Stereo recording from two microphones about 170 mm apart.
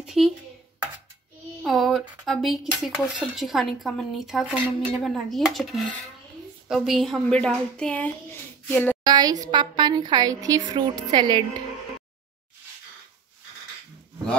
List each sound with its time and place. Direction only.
0.0 s speech: centre (ahead or behind)
1.6 s a woman's voice: centre (ahead or behind)
9.0 s speech: 25° right (ahead or behind)